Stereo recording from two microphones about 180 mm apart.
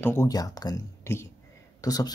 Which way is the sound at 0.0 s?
15° left (ahead or behind).